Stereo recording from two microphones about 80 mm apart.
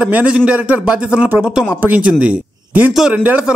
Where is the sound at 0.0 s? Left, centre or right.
Centre.